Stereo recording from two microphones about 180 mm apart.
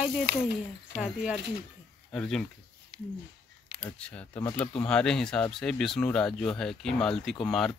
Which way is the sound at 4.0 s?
10° left (ahead or behind).